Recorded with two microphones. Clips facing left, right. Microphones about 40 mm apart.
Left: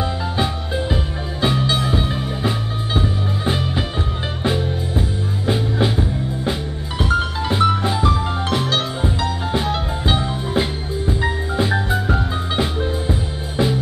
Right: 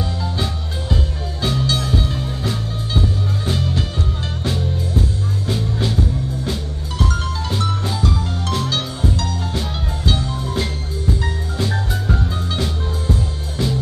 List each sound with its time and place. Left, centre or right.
0.2 s music: left